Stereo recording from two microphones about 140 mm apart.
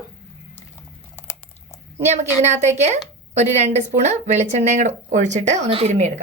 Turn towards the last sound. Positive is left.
turn(degrees=-55)  # may be behind; listen again after turning